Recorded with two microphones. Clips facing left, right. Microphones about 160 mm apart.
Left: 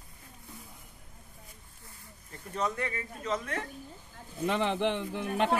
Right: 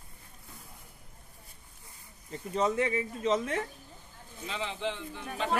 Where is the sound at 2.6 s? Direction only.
20° right (ahead or behind).